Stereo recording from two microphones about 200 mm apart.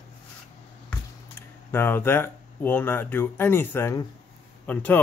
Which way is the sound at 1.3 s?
10° left (ahead or behind).